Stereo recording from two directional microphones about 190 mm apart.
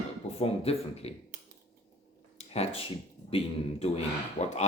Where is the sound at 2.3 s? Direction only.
35° left (ahead or behind).